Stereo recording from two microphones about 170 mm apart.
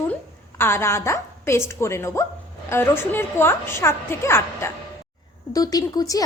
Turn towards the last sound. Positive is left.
turn(degrees=20)  # may be behind; listen again after turning